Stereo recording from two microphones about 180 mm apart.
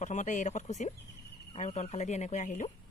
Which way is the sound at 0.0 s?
45° left (ahead or behind).